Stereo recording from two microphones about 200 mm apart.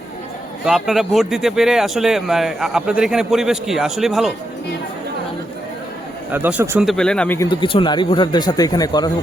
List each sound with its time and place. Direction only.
0.6 s speech: centre (ahead or behind)
6.3 s speech: 10° right (ahead or behind); by 7.4 s 5° left (ahead or behind)
7.4 s speech: 25° left (ahead or behind)